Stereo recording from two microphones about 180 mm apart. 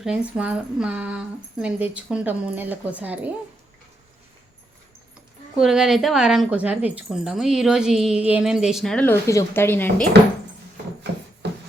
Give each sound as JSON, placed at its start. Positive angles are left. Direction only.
{"t": 0.0, "sound": "a woman's voice", "side_deg": -5}
{"t": 5.5, "sound": "speech", "side_deg": -5}